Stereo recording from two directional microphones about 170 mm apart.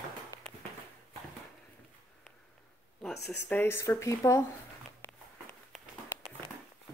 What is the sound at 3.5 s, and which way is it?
Speech, 15° left (ahead or behind).